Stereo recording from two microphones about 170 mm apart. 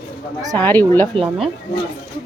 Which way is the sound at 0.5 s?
10° left (ahead or behind).